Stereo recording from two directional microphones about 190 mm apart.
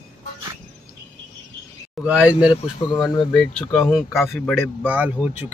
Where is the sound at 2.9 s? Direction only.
25° left (ahead or behind).